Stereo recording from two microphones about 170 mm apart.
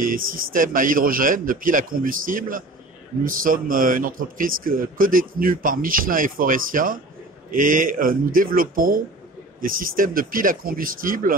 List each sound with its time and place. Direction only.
0.0 s speech: 55° right (ahead or behind)